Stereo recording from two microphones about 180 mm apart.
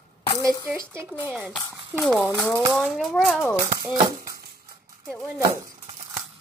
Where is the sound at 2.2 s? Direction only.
15° left (ahead or behind).